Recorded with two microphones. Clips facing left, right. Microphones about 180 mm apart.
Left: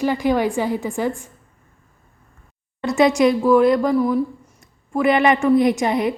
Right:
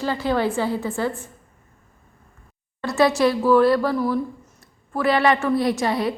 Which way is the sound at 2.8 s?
20° left (ahead or behind).